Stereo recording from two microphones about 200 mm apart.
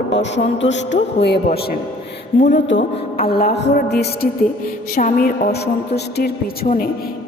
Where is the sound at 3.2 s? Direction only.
50° left (ahead or behind).